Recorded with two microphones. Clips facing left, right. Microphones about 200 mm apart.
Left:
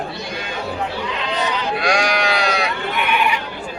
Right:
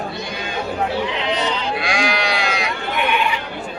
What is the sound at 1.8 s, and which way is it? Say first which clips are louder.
Sheep: left 4 dB; 40° left (ahead or behind).